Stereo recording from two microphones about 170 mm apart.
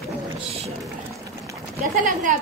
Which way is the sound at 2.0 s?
50° right (ahead or behind).